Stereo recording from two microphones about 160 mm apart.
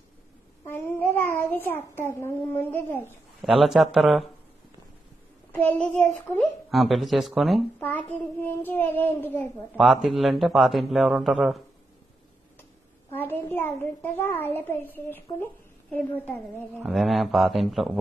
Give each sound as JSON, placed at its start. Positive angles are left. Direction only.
{"t": 0.7, "sound": "a child's voice", "side_deg": 15}
{"t": 3.6, "sound": "a man's voice", "side_deg": 0}
{"t": 5.5, "sound": "a child's voice", "side_deg": 10}
{"t": 7.8, "sound": "a child's voice", "side_deg": 10}
{"t": 9.8, "sound": "a man's voice", "side_deg": 0}
{"t": 13.1, "sound": "a child's voice", "side_deg": 15}
{"t": 16.7, "sound": "a man's voice", "side_deg": -5}